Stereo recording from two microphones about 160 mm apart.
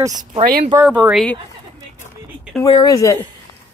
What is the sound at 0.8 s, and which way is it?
Speech, 10° right (ahead or behind).